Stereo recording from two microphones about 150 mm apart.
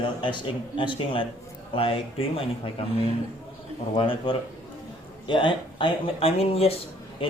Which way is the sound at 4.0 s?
35° left (ahead or behind).